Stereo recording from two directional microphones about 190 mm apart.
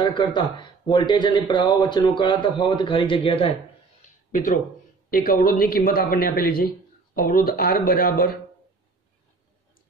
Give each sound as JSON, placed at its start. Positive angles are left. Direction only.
{"t": 0.0, "sound": "speech", "side_deg": 20}
{"t": 4.3, "sound": "speech", "side_deg": 45}